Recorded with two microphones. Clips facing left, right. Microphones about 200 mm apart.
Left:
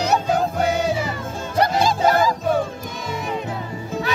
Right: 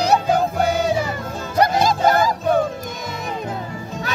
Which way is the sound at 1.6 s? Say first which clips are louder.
Right 1 dB; 45° right (ahead or behind).